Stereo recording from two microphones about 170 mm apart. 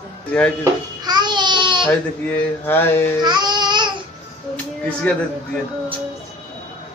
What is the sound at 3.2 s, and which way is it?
Babbling, 25° right (ahead or behind).